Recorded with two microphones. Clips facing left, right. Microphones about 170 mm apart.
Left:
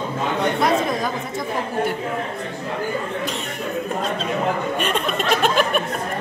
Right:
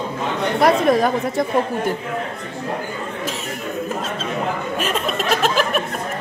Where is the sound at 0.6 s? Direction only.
60° right (ahead or behind).